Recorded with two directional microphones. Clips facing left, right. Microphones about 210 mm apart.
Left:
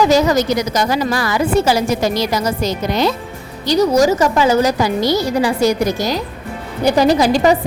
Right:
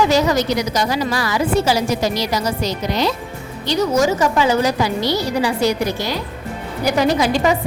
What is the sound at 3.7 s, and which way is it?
A woman's voice, 40° left (ahead or behind).